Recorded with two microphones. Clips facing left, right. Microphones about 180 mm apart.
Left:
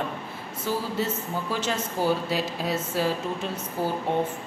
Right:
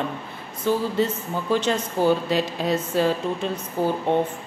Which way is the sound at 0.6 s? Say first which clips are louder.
Right 6 dB; 5° left (ahead or behind).